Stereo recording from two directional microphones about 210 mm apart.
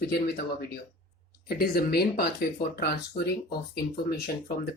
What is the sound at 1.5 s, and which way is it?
Speech, 50° left (ahead or behind).